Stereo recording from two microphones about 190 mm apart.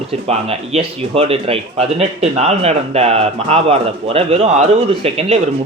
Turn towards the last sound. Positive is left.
turn(degrees=-30)  # may be behind; listen again after turning